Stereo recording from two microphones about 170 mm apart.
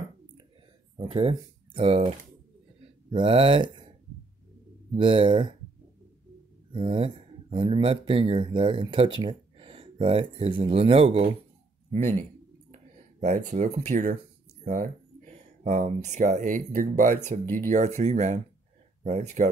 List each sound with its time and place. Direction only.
0.9 s speech: 30° right (ahead or behind)
4.9 s speech: 30° right (ahead or behind)
6.7 s speech: 30° right (ahead or behind)
13.2 s speech: 40° right (ahead or behind)
15.6 s speech: 45° right (ahead or behind)